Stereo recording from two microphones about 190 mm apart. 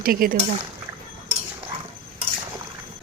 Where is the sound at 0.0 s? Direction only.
50° right (ahead or behind).